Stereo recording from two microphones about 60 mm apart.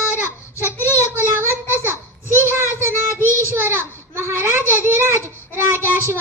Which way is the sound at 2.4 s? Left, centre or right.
Right.